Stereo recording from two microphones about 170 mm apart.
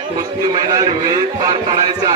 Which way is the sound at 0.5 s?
25° right (ahead or behind).